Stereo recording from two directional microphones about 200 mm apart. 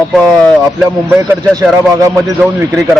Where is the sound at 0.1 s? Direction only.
5° left (ahead or behind).